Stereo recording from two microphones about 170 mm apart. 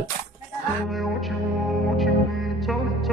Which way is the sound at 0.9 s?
Centre (ahead or behind).